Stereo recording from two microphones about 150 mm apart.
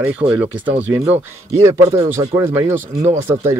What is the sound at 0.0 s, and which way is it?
Speech, 10° right (ahead or behind).